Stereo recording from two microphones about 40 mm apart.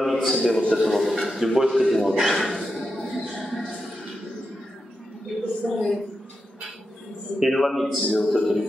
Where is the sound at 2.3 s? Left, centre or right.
Centre.